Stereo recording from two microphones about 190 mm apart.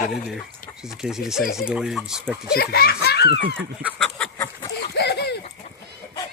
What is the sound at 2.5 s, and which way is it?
Speech, 55° left (ahead or behind).